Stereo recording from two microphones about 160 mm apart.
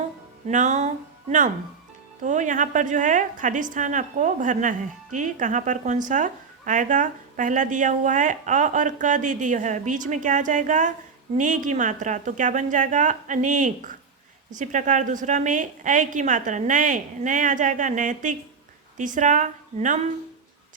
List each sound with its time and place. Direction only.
0.4 s a woman's voice: 50° right (ahead or behind)
2.2 s a woman's voice: 50° right (ahead or behind)